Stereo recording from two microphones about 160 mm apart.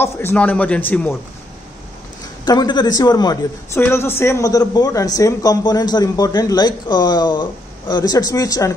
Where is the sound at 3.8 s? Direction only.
15° left (ahead or behind).